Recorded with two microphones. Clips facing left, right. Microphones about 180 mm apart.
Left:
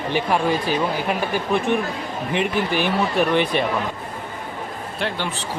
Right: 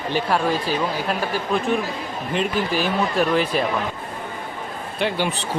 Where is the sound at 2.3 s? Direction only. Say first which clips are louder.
Left 1 dB; 60° left (ahead or behind).